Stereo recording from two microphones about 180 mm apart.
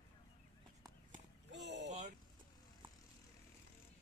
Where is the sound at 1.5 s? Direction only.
75° right (ahead or behind).